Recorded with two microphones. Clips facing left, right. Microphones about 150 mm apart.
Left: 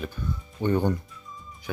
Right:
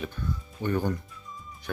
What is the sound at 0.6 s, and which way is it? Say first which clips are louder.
Speech: left 4 dB; 20° left (ahead or behind).